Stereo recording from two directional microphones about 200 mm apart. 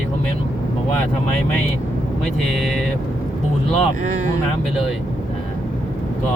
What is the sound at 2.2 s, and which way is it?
Speech, centre (ahead or behind).